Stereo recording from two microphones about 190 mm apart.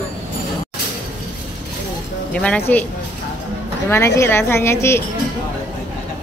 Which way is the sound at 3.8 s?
15° left (ahead or behind).